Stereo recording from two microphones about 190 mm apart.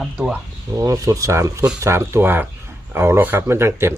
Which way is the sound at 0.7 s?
15° right (ahead or behind).